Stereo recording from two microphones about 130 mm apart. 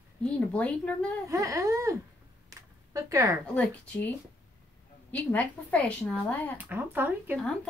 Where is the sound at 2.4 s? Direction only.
25° right (ahead or behind).